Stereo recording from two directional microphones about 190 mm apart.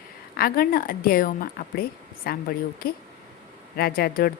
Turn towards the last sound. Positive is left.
turn(degrees=55)  # may be behind; listen again after turning